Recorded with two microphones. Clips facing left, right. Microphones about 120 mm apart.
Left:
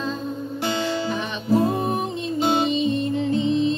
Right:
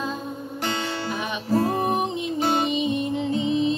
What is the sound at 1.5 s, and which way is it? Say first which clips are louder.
Music: left 3 dB; 15° left (ahead or behind).